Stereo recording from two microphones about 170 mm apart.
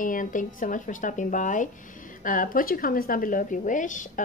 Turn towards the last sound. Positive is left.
turn(degrees=50)  # may be behind; listen again after turning